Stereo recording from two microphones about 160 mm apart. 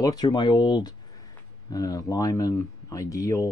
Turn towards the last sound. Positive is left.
turn(degrees=20)  # may be behind; listen again after turning